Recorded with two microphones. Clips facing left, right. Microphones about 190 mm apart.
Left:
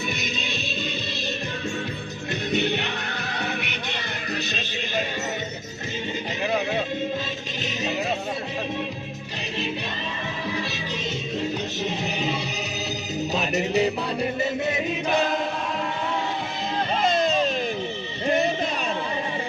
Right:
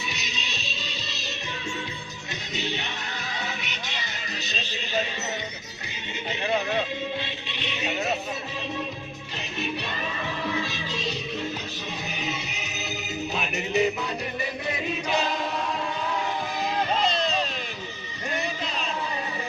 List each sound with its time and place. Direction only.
0.2 s music: 55° left (ahead or behind)
2.5 s music: 60° left (ahead or behind)
7.6 s music: 40° left (ahead or behind)
13.3 s music: 40° left (ahead or behind)
17.0 s music: 50° left (ahead or behind)